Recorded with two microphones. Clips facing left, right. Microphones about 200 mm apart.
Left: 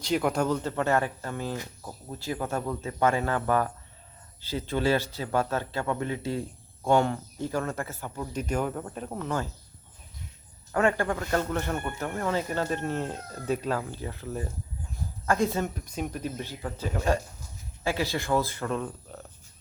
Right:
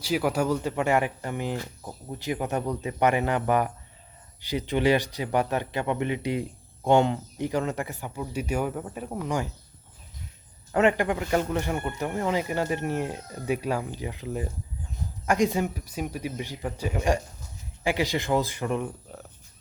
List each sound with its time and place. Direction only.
0.0 s speech: 5° right (ahead or behind)
10.7 s speech: 20° right (ahead or behind)
19.1 s cricket: 10° right (ahead or behind)